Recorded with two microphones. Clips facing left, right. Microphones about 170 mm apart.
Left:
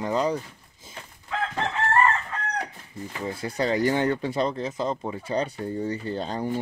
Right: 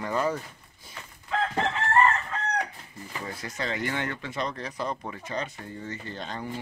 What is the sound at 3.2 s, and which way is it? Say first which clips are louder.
Speech: left 8 dB; 30° left (ahead or behind).